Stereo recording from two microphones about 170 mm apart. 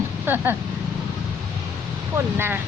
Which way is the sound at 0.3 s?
15° right (ahead or behind).